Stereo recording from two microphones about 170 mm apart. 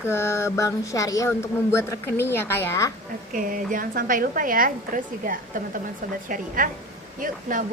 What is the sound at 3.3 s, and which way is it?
A woman's voice, 50° right (ahead or behind).